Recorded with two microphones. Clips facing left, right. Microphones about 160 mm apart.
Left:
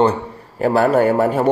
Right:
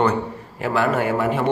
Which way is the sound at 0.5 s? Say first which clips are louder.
Left 6 dB; 40° left (ahead or behind).